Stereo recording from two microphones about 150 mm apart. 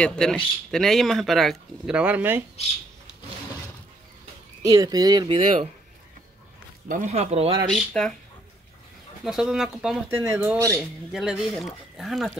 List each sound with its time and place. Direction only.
0.0 s speech: 5° left (ahead or behind); by 2.4 s 10° right (ahead or behind)
4.6 s speech: 25° right (ahead or behind)
6.9 s speech: 55° right (ahead or behind)
7.7 s speech: 5° left (ahead or behind)
9.2 s speech: 5° right (ahead or behind)
10.0 s speech: 15° right (ahead or behind)
10.8 s speech: 5° right (ahead or behind)